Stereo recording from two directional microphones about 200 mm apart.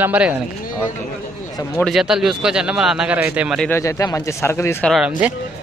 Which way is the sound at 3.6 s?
15° left (ahead or behind).